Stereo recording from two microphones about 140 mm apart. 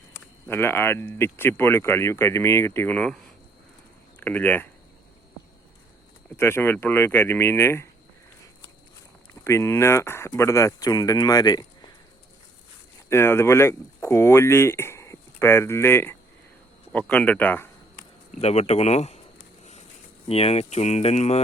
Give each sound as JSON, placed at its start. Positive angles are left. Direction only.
{"t": 0.4, "sound": "speech", "side_deg": 15}
{"t": 4.2, "sound": "speech", "side_deg": 15}
{"t": 6.3, "sound": "speech", "side_deg": 15}
{"t": 9.4, "sound": "speech", "side_deg": 20}
{"t": 13.1, "sound": "speech", "side_deg": 15}
{"t": 18.3, "sound": "speech", "side_deg": 45}
{"t": 20.2, "sound": "speech", "side_deg": 45}